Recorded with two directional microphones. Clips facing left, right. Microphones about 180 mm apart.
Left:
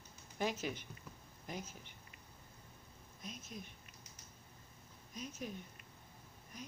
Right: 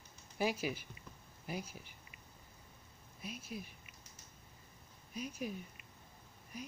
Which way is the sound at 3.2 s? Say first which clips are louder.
Right 4 dB; 10° right (ahead or behind).